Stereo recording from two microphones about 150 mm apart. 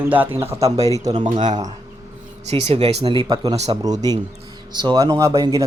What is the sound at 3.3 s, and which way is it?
Speech, 25° right (ahead or behind).